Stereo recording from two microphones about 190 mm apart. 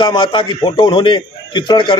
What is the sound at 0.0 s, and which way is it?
A man's voice, 25° left (ahead or behind).